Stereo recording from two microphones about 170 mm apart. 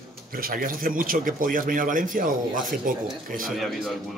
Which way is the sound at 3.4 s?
Centre (ahead or behind).